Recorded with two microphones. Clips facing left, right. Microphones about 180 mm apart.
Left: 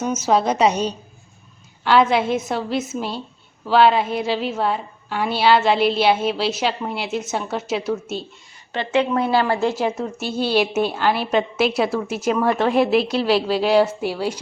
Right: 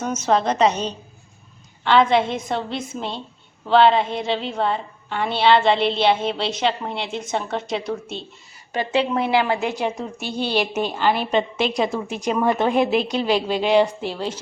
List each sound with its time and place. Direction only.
0.0 s a woman's voice: 5° left (ahead or behind)
9.1 s a woman's voice: 20° right (ahead or behind)
10.0 s a woman's voice: centre (ahead or behind)